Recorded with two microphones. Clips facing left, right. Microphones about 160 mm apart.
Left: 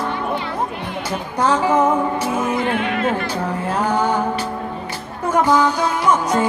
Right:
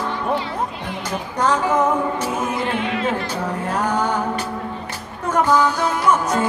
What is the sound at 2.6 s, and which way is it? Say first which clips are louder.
Music: left 2 dB; 55° left (ahead or behind).